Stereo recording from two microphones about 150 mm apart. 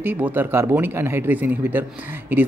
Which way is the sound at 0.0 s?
10° right (ahead or behind).